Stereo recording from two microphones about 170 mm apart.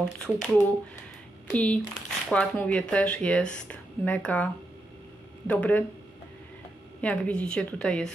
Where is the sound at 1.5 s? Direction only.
5° left (ahead or behind).